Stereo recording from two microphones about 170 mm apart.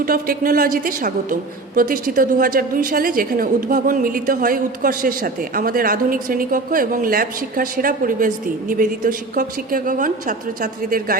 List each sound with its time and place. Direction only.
0.0 s a woman's voice: 60° right (ahead or behind)